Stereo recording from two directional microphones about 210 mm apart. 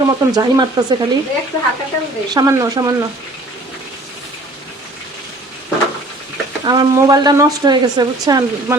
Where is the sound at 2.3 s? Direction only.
15° right (ahead or behind).